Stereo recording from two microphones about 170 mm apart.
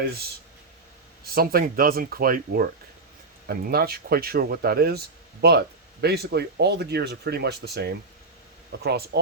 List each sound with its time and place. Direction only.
1.4 s speech: 60° right (ahead or behind)